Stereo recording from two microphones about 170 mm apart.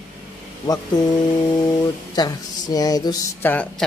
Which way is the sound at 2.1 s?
20° left (ahead or behind).